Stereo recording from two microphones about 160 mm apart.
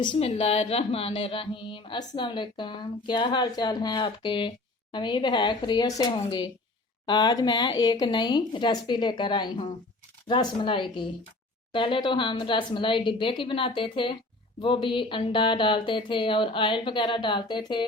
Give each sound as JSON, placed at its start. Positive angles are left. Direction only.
{"t": 0.0, "sound": "speech", "side_deg": 35}